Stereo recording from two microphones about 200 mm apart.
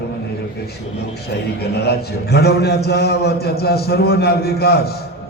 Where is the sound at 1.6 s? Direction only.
55° left (ahead or behind).